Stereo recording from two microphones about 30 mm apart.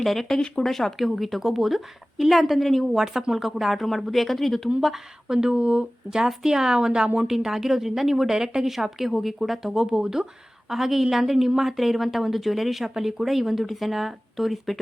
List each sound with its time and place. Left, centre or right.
0.0 s speech: centre
0.9 s a woman's voice: centre
3.0 s a woman's voice: centre
5.3 s speech: right
6.2 s speech: centre
7.3 s speech: centre
9.8 s speech: right
10.7 s speech: centre